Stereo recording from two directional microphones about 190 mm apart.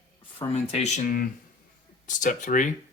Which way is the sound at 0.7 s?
40° left (ahead or behind).